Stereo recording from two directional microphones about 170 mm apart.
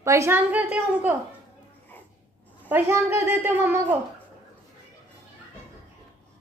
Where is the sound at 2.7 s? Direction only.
15° right (ahead or behind).